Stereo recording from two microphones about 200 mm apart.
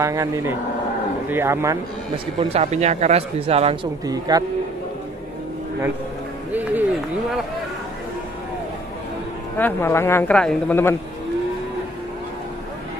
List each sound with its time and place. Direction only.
0.0 s speech: 15° right (ahead or behind)
2.5 s speech: 35° right (ahead or behind)
4.0 s speech: 20° right (ahead or behind)
6.5 s speech: 10° right (ahead or behind)
9.6 s speech: 10° left (ahead or behind)